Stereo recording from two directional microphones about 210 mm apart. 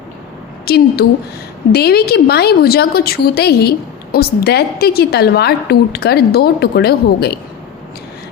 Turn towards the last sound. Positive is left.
turn(degrees=50)  # may be behind; listen again after turning